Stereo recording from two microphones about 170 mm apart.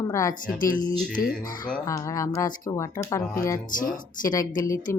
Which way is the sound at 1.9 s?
20° left (ahead or behind).